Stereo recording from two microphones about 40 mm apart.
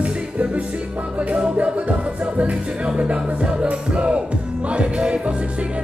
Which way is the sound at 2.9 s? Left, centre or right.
Right.